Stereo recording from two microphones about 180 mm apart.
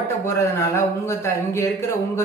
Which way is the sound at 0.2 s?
15° left (ahead or behind).